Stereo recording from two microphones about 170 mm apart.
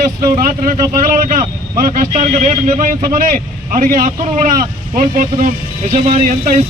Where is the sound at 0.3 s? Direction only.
50° right (ahead or behind).